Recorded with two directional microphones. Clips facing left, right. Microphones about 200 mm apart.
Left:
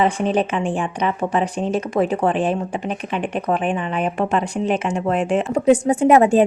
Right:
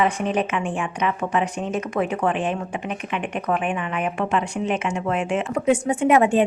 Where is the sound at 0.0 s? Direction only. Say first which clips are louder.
Left 3 dB; 30° left (ahead or behind).